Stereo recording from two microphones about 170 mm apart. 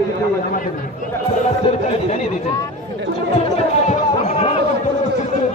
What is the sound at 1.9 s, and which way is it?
Speech, 40° left (ahead or behind).